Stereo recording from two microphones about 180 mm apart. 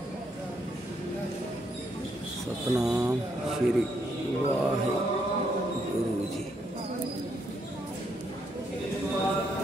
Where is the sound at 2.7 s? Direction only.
5° right (ahead or behind).